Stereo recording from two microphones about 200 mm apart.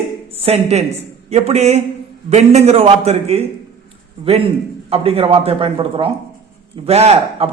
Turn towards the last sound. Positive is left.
turn(degrees=-30)  # may be behind; listen again after turning